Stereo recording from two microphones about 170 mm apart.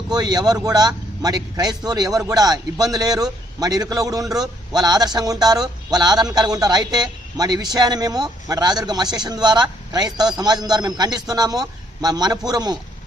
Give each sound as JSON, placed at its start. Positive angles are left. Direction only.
{"t": 0.1, "sound": "a man's voice", "side_deg": -20}